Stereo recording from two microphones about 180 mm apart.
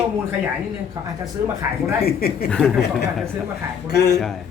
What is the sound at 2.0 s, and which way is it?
Speech, 60° left (ahead or behind).